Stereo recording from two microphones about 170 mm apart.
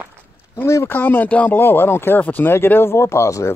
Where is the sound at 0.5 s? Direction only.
15° left (ahead or behind).